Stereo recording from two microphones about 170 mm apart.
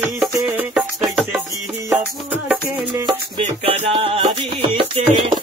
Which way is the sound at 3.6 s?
35° right (ahead or behind).